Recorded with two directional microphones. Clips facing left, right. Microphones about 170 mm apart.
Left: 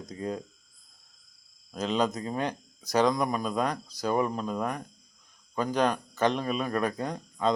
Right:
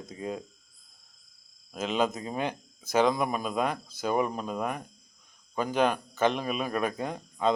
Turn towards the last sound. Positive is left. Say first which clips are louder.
# even
turn(degrees=-5)  # may be behind; listen again after turning